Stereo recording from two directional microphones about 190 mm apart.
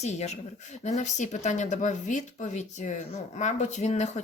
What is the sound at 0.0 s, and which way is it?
Speech, 35° left (ahead or behind).